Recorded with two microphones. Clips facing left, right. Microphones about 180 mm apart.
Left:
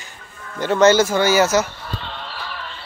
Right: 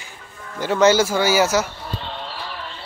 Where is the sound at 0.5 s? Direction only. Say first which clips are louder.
Left 2 dB; 10° right (ahead or behind).